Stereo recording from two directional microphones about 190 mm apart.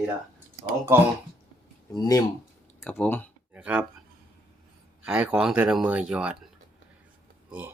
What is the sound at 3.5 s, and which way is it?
Speech, 5° right (ahead or behind).